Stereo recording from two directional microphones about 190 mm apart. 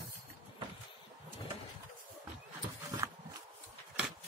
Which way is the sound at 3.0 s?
15° right (ahead or behind).